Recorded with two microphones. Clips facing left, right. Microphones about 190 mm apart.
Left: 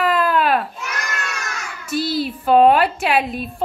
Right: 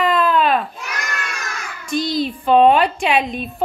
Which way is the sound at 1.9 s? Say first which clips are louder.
Right 1 dB; 5° left (ahead or behind).